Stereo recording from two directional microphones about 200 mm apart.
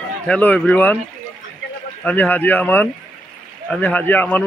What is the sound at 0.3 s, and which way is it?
Speech, 5° left (ahead or behind).